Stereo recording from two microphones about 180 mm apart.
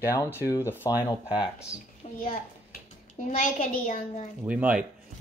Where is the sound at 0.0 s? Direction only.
15° left (ahead or behind).